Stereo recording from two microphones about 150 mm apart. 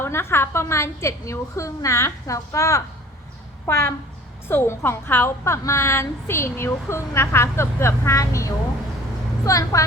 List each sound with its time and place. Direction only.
0.0 s a woman's voice: 15° left (ahead or behind)